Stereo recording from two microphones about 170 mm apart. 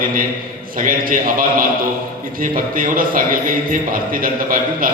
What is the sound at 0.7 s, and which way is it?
A man's voice, 55° right (ahead or behind).